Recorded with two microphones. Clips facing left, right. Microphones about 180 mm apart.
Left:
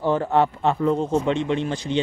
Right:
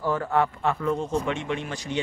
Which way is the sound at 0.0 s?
25° left (ahead or behind).